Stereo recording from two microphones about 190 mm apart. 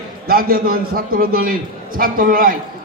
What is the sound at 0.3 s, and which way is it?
A man's voice, 50° right (ahead or behind).